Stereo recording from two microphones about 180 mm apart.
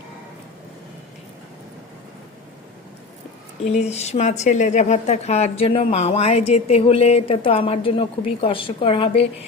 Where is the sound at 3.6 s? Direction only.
35° left (ahead or behind).